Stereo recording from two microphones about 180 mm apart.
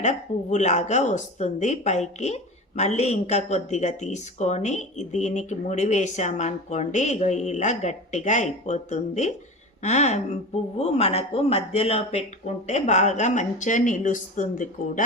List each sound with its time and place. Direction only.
0.0 s speech: 40° left (ahead or behind)